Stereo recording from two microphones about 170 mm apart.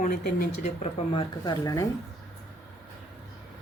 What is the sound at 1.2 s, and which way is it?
Speech, 20° left (ahead or behind).